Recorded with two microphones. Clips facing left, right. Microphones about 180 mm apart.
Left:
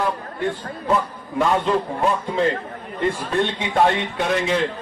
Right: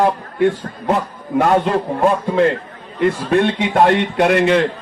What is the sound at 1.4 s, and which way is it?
A man's voice, 65° right (ahead or behind).